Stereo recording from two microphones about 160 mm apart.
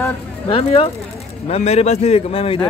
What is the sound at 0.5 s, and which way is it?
A man's voice, 35° left (ahead or behind).